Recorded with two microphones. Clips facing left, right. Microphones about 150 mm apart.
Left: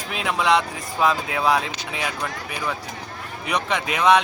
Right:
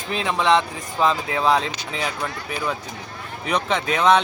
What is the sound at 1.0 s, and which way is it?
Speech, 10° left (ahead or behind).